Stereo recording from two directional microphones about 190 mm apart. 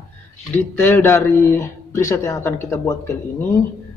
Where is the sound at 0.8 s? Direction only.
10° left (ahead or behind).